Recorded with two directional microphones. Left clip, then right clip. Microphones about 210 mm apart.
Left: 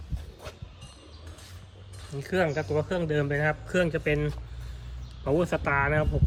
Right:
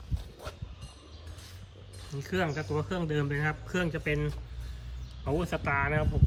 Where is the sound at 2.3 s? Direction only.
15° right (ahead or behind).